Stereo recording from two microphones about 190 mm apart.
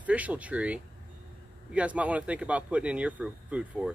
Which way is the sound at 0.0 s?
10° right (ahead or behind).